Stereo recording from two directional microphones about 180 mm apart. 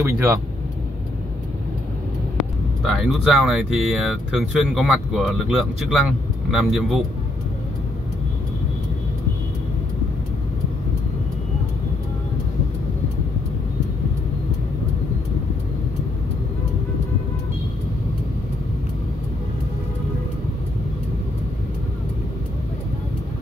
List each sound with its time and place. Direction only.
0.0 s speech: 15° right (ahead or behind)
2.3 s speech: centre (ahead or behind)